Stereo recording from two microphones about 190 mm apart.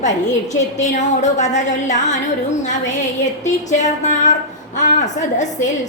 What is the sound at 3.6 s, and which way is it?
A woman's voice, 40° left (ahead or behind).